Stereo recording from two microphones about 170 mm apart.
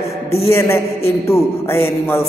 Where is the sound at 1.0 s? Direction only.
15° left (ahead or behind).